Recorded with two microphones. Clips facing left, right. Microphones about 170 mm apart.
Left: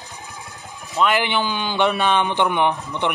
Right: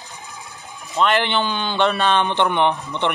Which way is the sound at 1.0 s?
5° left (ahead or behind).